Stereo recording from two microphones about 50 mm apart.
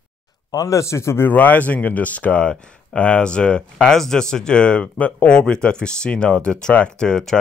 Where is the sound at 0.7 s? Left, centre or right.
Left.